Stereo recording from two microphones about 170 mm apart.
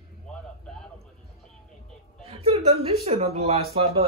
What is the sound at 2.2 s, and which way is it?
Whimper, 35° right (ahead or behind).